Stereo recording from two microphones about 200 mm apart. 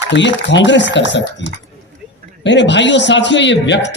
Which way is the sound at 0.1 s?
65° left (ahead or behind).